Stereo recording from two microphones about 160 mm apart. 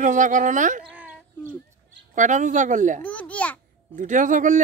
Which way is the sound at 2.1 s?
50° right (ahead or behind).